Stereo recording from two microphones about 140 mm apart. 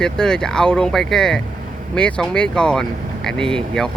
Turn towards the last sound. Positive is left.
turn(degrees=5)  # may be behind; listen again after turning